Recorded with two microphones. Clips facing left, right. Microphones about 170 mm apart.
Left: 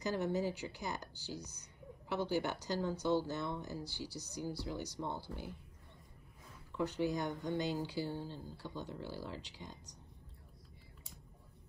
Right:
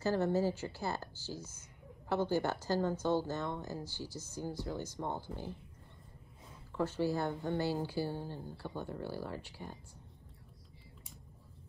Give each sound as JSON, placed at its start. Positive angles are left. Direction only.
{"t": 0.0, "sound": "a woman's voice", "side_deg": 15}
{"t": 5.0, "sound": "speech", "side_deg": -15}
{"t": 6.8, "sound": "a woman's voice", "side_deg": 15}
{"t": 8.1, "sound": "speech", "side_deg": -15}
{"t": 8.8, "sound": "a woman's voice", "side_deg": 15}